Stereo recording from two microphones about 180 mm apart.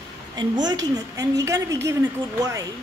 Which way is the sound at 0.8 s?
20° right (ahead or behind).